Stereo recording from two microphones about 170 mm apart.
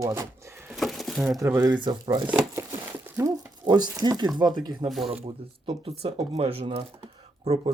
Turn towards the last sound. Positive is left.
turn(degrees=-40)  # may be behind; listen again after turning